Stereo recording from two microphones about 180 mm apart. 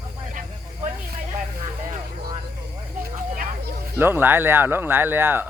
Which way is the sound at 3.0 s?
45° right (ahead or behind).